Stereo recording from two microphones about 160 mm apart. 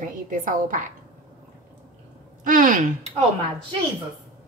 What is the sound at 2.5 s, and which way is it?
Speech, 55° right (ahead or behind).